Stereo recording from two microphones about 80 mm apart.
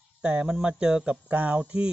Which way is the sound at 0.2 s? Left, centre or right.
Centre.